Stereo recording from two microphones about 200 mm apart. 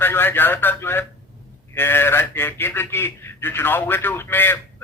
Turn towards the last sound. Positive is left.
turn(degrees=10)  # may be behind; listen again after turning